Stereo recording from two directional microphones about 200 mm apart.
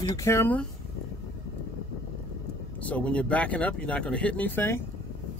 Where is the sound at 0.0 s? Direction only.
15° left (ahead or behind).